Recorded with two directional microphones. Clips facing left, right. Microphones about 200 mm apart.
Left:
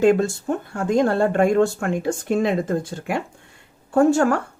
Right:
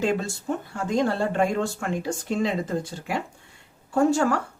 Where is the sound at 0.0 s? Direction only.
55° left (ahead or behind).